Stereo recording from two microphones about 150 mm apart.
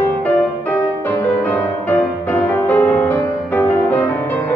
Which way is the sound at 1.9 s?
10° left (ahead or behind).